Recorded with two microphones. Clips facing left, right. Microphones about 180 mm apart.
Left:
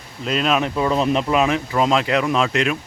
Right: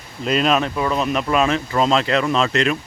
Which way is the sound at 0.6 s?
25° left (ahead or behind).